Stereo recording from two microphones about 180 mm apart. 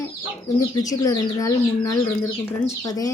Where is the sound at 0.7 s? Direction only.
20° left (ahead or behind).